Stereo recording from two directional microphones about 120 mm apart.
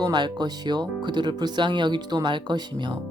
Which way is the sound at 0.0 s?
35° right (ahead or behind).